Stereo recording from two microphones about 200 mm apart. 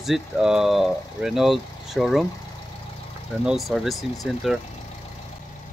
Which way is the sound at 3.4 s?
Centre (ahead or behind).